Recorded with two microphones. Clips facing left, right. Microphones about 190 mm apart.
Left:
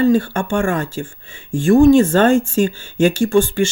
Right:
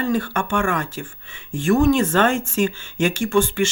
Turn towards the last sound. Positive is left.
turn(degrees=30)  # may be behind; listen again after turning